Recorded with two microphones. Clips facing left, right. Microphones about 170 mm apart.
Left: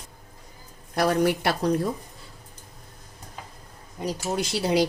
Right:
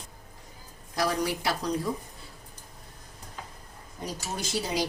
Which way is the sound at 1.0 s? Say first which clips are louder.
Left 6 dB; 60° left (ahead or behind).